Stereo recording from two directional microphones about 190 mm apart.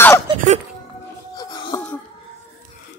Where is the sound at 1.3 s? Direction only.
20° left (ahead or behind).